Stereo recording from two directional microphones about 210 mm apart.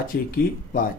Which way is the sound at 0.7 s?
40° left (ahead or behind).